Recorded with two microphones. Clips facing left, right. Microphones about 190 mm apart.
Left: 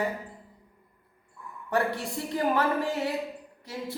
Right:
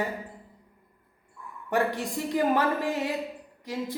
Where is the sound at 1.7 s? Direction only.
15° right (ahead or behind).